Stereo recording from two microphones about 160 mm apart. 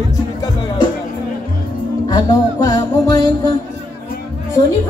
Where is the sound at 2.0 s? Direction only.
25° left (ahead or behind).